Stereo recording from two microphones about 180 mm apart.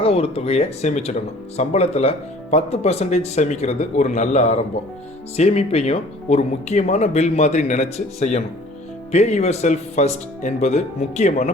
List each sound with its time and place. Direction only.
0.0 s speech: 35° left (ahead or behind)